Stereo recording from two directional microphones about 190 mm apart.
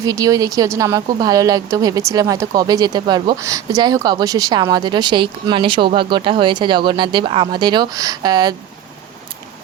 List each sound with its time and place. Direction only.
0.0 s a woman's voice: 20° right (ahead or behind)